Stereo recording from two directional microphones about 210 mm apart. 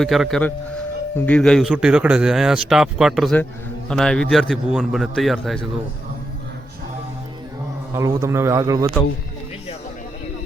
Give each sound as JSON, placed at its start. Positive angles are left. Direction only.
{"t": 0.0, "sound": "speech", "side_deg": 0}
{"t": 7.9, "sound": "a man's voice", "side_deg": -15}